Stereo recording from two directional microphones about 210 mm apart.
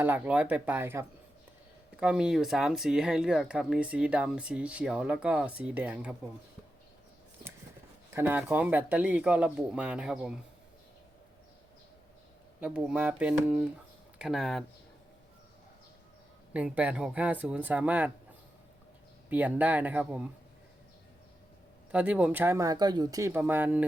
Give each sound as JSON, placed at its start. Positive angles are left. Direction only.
{"t": 0.0, "sound": "speech", "side_deg": -10}
{"t": 8.1, "sound": "speech", "side_deg": -10}
{"t": 12.5, "sound": "speech", "side_deg": -5}
{"t": 16.5, "sound": "speech", "side_deg": -5}
{"t": 19.3, "sound": "speech", "side_deg": -5}
{"t": 21.9, "sound": "speech", "side_deg": -5}